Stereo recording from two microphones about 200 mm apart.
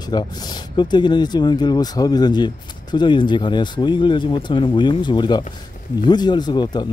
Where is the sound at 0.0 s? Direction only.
20° left (ahead or behind).